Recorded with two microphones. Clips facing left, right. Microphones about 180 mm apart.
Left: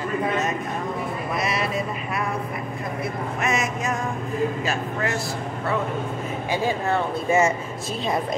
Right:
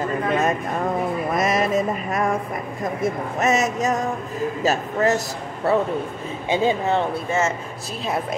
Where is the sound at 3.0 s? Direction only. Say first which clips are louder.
Right 6 dB; 40° right (ahead or behind).